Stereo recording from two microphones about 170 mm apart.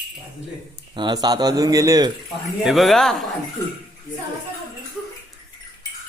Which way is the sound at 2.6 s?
Centre (ahead or behind).